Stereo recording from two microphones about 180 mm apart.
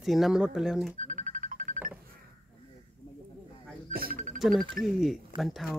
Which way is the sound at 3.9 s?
55° right (ahead or behind).